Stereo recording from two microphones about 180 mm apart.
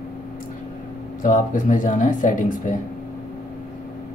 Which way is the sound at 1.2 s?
50° left (ahead or behind).